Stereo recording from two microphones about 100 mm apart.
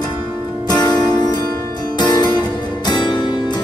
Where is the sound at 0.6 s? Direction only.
45° left (ahead or behind).